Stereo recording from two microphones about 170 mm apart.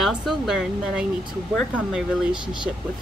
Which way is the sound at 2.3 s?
30° right (ahead or behind).